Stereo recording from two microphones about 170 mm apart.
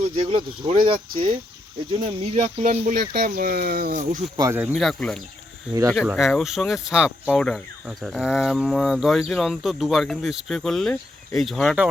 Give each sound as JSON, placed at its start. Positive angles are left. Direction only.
{"t": 0.2, "sound": "speech", "side_deg": -35}
{"t": 4.4, "sound": "speech", "side_deg": -20}
{"t": 4.7, "sound": "speech", "side_deg": 0}